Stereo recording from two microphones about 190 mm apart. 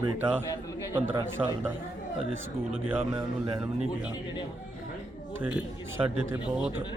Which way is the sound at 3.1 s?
30° right (ahead or behind).